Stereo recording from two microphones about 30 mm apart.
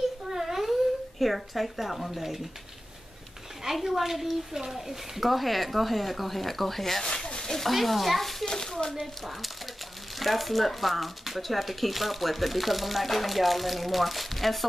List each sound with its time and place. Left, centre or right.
0.4 s babbling: centre
1.2 s speech: centre
3.6 s a woman's voice: centre
7.0 s speech: centre
8.5 s speech: left
9.0 s speech: centre